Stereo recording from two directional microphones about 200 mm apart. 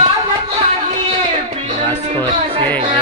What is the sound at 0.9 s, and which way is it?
Music, 30° right (ahead or behind).